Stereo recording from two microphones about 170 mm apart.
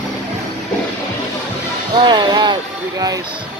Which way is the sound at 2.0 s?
25° right (ahead or behind).